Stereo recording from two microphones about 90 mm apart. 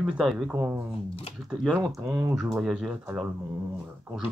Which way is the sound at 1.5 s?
5° left (ahead or behind).